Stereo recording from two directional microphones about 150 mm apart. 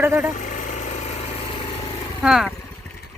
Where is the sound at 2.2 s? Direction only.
5° right (ahead or behind).